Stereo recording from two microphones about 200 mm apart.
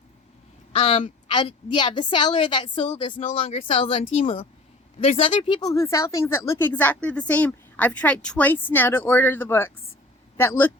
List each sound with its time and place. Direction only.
0.7 s a woman's voice: 25° left (ahead or behind); by 10.7 s 10° left (ahead or behind)